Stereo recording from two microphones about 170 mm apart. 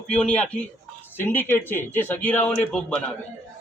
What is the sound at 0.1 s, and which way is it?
A man's voice, 5° left (ahead or behind).